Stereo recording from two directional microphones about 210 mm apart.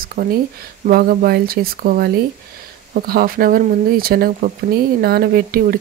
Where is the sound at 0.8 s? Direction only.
45° right (ahead or behind).